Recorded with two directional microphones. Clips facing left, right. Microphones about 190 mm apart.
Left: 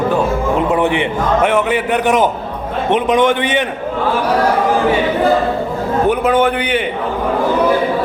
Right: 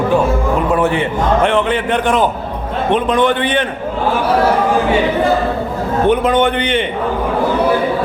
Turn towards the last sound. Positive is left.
turn(degrees=10)  # may be behind; listen again after turning